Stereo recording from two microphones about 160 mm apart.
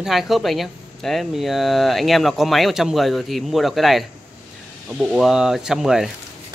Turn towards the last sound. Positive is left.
turn(degrees=0)  # may be behind; listen again after turning